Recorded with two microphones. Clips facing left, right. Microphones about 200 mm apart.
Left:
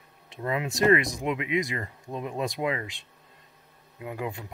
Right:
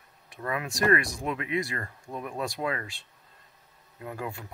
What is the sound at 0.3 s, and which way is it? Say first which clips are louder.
Speech: left 3 dB; 20° left (ahead or behind).